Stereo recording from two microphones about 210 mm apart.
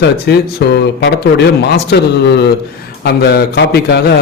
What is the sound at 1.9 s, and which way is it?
A man's voice, 50° left (ahead or behind).